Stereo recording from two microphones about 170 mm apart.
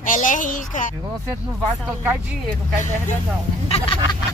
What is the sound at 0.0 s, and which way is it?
Speech, 50° left (ahead or behind).